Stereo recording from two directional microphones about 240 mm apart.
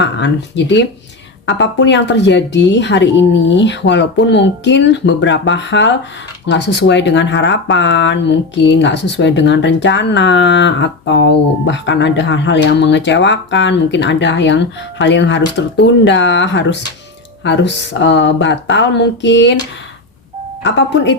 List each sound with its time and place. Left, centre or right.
0.0 s speech: left
20.7 s speech: left